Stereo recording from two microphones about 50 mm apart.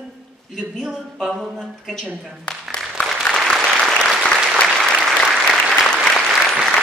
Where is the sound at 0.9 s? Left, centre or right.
Centre.